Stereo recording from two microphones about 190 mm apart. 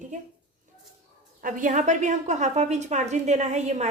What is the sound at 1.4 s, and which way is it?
A woman's voice, 45° right (ahead or behind).